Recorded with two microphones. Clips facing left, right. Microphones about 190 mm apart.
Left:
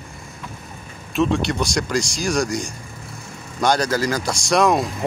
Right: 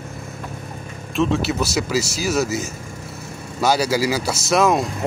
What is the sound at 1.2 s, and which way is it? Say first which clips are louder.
Speech: even; centre (ahead or behind).